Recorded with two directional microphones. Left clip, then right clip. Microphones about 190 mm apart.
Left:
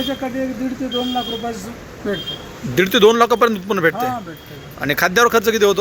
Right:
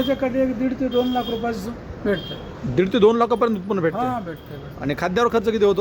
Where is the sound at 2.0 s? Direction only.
25° right (ahead or behind).